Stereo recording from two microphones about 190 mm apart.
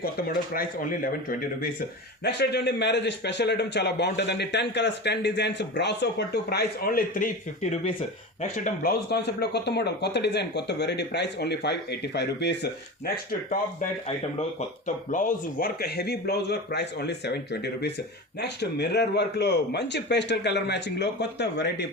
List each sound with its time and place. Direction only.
0.0 s speech: 50° left (ahead or behind)
2.2 s a man's voice: 60° left (ahead or behind)
14.8 s a man's voice: 40° left (ahead or behind); by 21.8 s 65° left (ahead or behind)